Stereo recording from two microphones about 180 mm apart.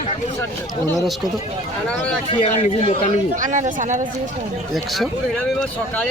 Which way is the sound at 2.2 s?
30° left (ahead or behind).